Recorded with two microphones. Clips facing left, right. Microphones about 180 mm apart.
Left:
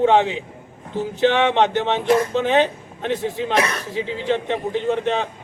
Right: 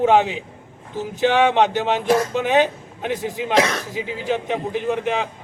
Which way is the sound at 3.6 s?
90° right.